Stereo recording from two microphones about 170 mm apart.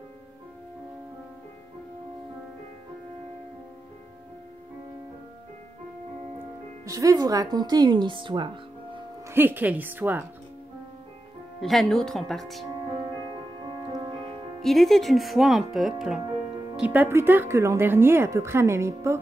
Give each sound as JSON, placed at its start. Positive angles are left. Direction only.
{"t": 6.9, "sound": "speech", "side_deg": -20}
{"t": 9.3, "sound": "speech", "side_deg": -10}
{"t": 11.6, "sound": "speech", "side_deg": 0}
{"t": 14.6, "sound": "speech", "side_deg": 0}